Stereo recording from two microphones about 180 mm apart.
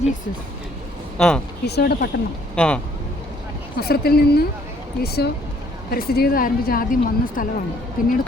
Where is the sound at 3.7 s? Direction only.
60° left (ahead or behind).